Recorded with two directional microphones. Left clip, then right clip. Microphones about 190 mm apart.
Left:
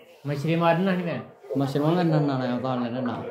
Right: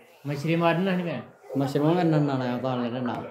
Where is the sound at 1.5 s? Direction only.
20° right (ahead or behind).